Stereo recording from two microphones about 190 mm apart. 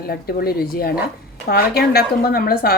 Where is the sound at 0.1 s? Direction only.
55° left (ahead or behind).